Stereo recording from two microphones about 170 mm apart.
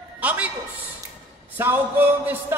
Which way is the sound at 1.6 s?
10° right (ahead or behind).